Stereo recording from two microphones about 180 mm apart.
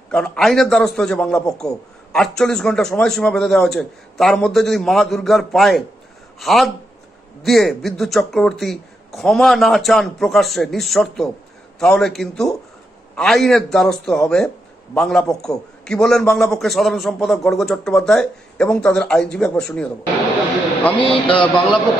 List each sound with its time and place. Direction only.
0.1 s a man's voice: 5° left (ahead or behind)
21.0 s mantra: 30° left (ahead or behind)